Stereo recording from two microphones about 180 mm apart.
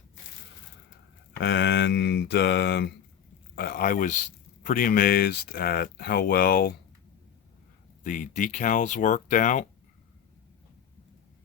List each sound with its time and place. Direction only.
1.4 s speech: 75° left (ahead or behind)
3.5 s speech: 55° left (ahead or behind)
8.0 s speech: 45° left (ahead or behind)